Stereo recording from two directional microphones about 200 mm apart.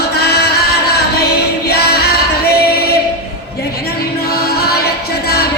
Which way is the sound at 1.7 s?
50° left (ahead or behind).